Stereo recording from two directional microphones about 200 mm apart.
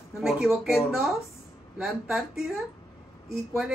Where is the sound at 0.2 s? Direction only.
Centre (ahead or behind).